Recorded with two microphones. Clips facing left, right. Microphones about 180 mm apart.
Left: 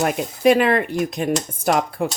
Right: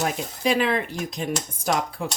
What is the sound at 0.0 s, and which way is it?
Speech, 60° left (ahead or behind).